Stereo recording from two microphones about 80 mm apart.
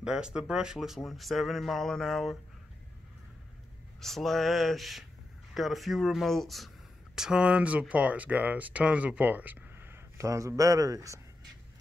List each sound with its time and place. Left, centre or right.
0.0 s speech: centre
4.0 s speech: centre
7.2 s speech: centre; by 11.1 s right